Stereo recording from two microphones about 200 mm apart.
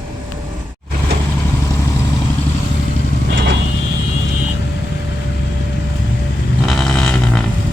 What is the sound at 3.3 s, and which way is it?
Vehicle, 60° right (ahead or behind).